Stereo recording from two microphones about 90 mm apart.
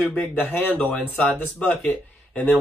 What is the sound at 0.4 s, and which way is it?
Speech, 20° left (ahead or behind).